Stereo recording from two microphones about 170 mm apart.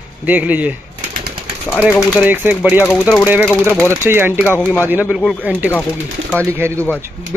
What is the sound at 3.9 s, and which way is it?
Speech, 15° right (ahead or behind).